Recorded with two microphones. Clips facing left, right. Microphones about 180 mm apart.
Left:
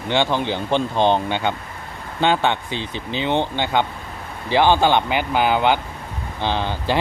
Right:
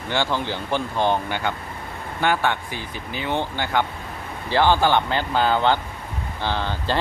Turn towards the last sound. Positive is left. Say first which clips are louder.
# left 3 dB
turn(degrees=15)  # may be behind; listen again after turning